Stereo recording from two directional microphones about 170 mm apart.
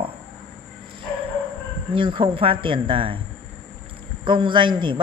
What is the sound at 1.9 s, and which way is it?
Speech, 30° right (ahead or behind).